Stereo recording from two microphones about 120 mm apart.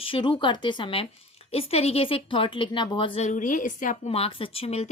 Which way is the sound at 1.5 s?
60° left (ahead or behind).